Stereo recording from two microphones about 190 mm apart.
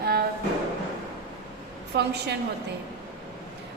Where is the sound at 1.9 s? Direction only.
60° right (ahead or behind).